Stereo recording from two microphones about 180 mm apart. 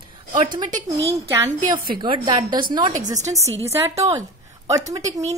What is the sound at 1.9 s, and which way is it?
A woman's voice, 25° right (ahead or behind).